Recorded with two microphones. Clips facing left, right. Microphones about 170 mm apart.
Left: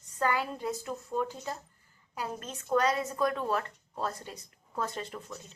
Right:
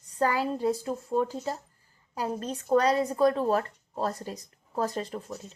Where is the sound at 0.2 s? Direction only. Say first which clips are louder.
Right 4 dB; 35° right (ahead or behind).